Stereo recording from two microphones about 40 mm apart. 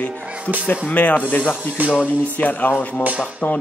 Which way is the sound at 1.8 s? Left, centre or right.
Right.